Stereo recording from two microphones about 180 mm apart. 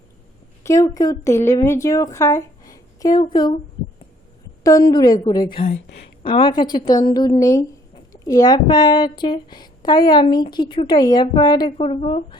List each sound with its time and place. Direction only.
0.6 s a woman's voice: 15° left (ahead or behind)
4.6 s a woman's voice: 20° left (ahead or behind)